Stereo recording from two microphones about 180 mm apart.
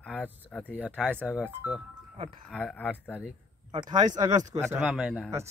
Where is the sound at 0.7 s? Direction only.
5° right (ahead or behind).